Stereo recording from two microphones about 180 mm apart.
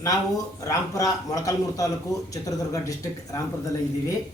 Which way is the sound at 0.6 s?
20° left (ahead or behind).